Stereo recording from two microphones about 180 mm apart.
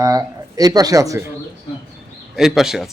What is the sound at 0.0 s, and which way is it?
Speech, 20° right (ahead or behind).